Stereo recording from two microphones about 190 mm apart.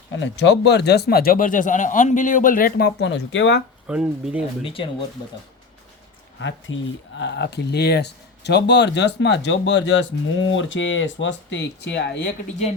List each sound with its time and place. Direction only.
0.1 s speech: 75° left (ahead or behind)
3.8 s speech: 5° right (ahead or behind)
4.6 s speech: 30° left (ahead or behind)
6.7 s speech: 80° left
7.2 s speech: 65° left (ahead or behind)